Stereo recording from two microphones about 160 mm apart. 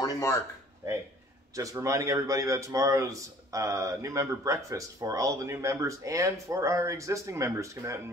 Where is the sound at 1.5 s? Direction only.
20° right (ahead or behind).